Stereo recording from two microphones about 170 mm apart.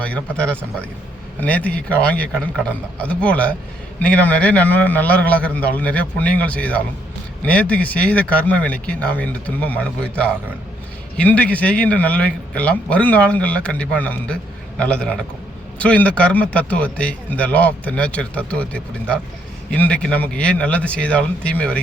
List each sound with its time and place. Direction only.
0.3 s a man's voice: 5° left (ahead or behind)